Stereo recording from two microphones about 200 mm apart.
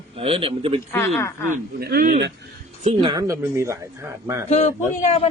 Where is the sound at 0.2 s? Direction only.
25° right (ahead or behind).